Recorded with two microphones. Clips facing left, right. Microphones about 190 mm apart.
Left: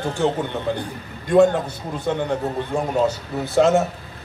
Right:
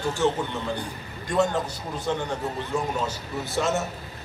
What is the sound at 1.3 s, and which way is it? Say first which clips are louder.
A man's voice: left 8 dB; 55° left (ahead or behind).